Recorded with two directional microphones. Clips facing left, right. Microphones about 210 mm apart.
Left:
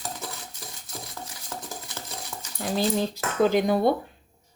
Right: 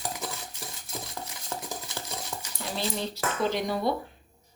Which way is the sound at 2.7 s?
45° left (ahead or behind).